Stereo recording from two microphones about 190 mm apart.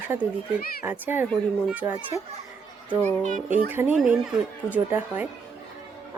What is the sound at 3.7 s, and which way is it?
A woman's voice, 10° right (ahead or behind).